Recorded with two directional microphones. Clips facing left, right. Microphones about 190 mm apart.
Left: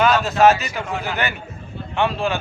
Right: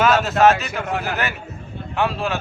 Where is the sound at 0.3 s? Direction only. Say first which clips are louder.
Left 1 dB; centre (ahead or behind).